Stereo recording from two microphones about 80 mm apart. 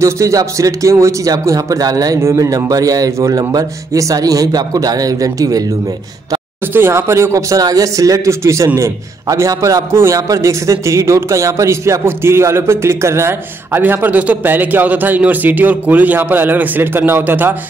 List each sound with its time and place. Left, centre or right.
0.0 s a man's voice: right
2.2 s a man's voice: right
6.7 s a man's voice: right